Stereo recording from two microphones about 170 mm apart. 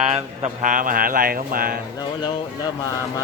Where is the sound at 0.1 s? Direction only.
45° right (ahead or behind).